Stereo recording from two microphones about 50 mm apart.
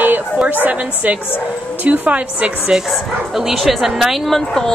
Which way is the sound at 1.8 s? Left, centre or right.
Right.